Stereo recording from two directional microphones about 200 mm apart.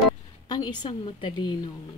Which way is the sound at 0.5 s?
20° left (ahead or behind).